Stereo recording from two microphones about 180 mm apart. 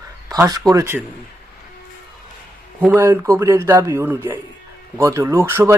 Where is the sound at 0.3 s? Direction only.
20° right (ahead or behind).